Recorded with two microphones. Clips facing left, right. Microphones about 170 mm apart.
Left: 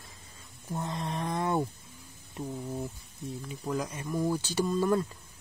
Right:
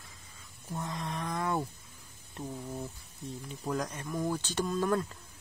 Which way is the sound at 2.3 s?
10° left (ahead or behind).